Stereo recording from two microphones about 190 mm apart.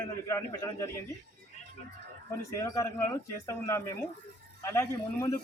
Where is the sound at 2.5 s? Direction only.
15° left (ahead or behind).